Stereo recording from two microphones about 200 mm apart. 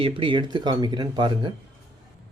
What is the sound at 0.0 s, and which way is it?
Speech, 25° right (ahead or behind).